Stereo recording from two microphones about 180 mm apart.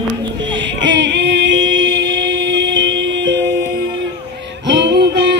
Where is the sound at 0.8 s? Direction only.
85° right.